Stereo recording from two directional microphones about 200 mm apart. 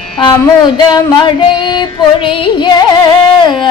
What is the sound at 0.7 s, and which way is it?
Music, 20° left (ahead or behind).